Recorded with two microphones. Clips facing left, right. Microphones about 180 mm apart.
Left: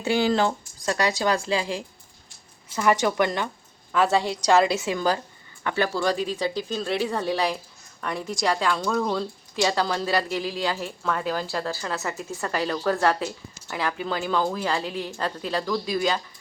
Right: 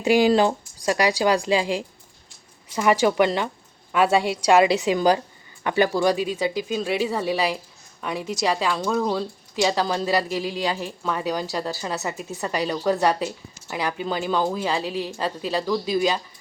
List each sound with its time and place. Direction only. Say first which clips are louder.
0.0 s a woman's voice: right 4 dB; 15° right (ahead or behind)